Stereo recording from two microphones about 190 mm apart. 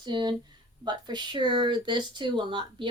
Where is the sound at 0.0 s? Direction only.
25° right (ahead or behind).